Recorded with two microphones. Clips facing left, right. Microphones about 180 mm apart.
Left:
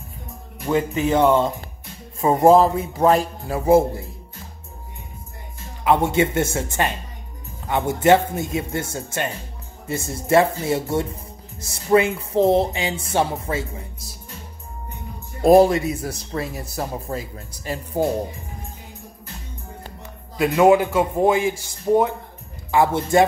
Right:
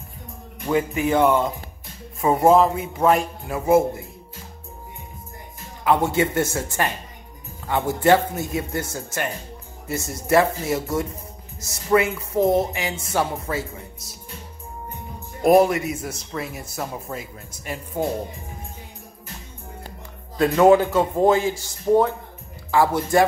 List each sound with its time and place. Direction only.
0.7 s speech: 20° left (ahead or behind)
2.2 s a man's voice: 30° left (ahead or behind)
5.9 s speech: 25° left (ahead or behind)
15.4 s a man's voice: 30° left (ahead or behind)
20.3 s a man's voice: 10° left (ahead or behind)